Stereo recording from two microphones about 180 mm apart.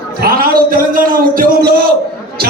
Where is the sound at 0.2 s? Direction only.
55° right (ahead or behind).